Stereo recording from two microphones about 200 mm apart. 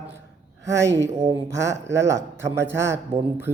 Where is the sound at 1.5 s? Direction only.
15° right (ahead or behind).